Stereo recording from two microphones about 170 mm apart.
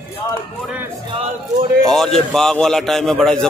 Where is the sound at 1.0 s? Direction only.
30° right (ahead or behind).